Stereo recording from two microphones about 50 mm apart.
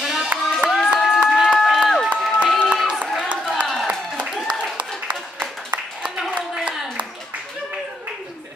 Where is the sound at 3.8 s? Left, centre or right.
Right.